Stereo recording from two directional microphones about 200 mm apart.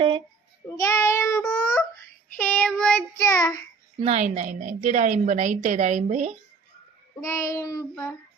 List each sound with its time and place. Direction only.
0.8 s child singing: 15° left (ahead or behind)
4.0 s a woman's voice: 35° right (ahead or behind)
7.2 s child singing: 15° left (ahead or behind)